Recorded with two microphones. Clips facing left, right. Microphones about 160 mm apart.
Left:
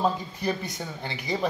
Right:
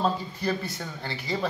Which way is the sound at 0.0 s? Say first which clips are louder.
Left 1 dB; 15° left (ahead or behind).